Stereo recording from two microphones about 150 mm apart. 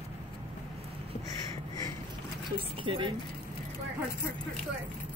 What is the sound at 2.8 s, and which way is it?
Speech, 35° right (ahead or behind).